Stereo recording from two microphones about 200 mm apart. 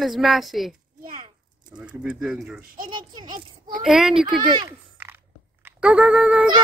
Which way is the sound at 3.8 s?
Centre (ahead or behind).